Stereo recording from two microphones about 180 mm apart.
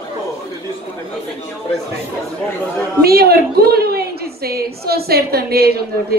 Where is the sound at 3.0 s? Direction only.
60° right (ahead or behind).